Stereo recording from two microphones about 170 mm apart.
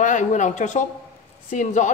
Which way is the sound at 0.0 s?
45° left (ahead or behind).